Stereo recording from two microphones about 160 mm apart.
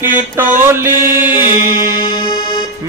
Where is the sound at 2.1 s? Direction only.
30° left (ahead or behind).